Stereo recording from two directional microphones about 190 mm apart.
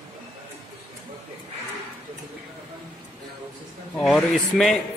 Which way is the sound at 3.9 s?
5° left (ahead or behind).